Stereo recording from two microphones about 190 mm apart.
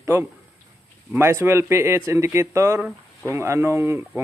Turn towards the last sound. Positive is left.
turn(degrees=-10)  # may be behind; listen again after turning